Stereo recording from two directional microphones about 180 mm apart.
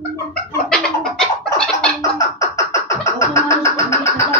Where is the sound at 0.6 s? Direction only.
5° left (ahead or behind).